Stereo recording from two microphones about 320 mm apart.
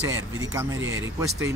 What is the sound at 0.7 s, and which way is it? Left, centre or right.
Speech, right.